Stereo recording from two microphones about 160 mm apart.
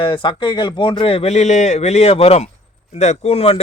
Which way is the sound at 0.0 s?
30° left (ahead or behind).